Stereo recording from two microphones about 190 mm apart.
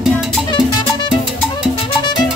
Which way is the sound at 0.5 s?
25° left (ahead or behind).